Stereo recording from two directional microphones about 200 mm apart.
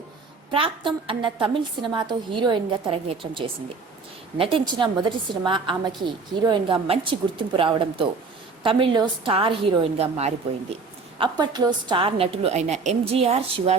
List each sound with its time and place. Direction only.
0.5 s a woman's voice: 25° right (ahead or behind)
11.2 s a woman's voice: 20° right (ahead or behind)